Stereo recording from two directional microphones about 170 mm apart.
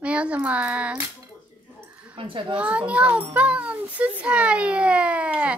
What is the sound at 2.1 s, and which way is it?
Speech, 30° right (ahead or behind).